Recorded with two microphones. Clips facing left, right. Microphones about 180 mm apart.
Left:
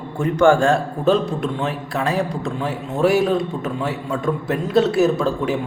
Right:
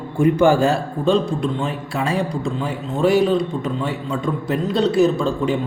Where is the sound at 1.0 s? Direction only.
5° left (ahead or behind).